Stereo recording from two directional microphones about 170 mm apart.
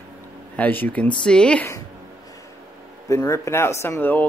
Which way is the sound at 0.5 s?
10° left (ahead or behind).